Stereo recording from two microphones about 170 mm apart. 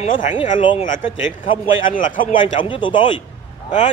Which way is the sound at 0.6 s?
30° left (ahead or behind).